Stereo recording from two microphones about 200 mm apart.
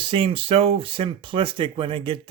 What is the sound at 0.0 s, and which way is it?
Speech, 25° right (ahead or behind).